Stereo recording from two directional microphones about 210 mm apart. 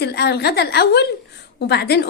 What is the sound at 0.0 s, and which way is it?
A woman's voice, 50° left (ahead or behind).